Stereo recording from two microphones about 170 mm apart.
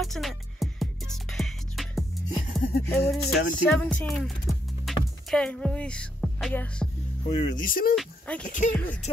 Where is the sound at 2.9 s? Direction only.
Centre (ahead or behind).